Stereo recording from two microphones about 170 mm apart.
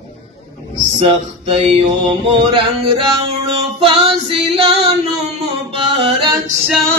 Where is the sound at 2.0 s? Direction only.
30° right (ahead or behind).